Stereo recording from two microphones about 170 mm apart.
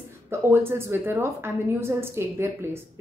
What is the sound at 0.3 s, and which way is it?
A woman's voice, 15° right (ahead or behind).